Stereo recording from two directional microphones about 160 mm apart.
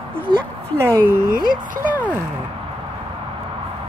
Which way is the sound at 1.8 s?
10° right (ahead or behind).